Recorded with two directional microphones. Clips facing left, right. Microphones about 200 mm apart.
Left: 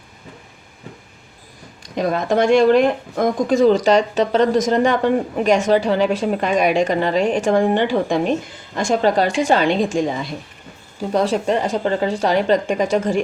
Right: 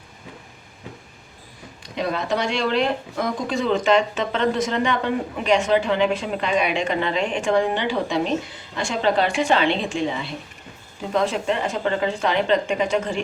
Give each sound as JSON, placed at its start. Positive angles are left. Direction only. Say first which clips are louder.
{"t": 2.0, "sound": "a woman's voice", "louder": "left 6 dB", "side_deg": 45}